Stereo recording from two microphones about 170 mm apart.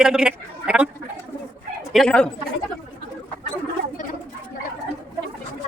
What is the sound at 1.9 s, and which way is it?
Speech, 5° left (ahead or behind).